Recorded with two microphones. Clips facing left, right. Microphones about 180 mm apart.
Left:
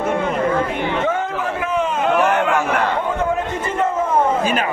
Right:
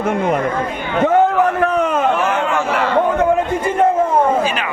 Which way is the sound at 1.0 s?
55° right (ahead or behind).